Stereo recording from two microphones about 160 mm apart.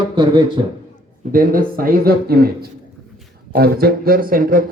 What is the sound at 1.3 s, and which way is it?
Speech, 60° right (ahead or behind).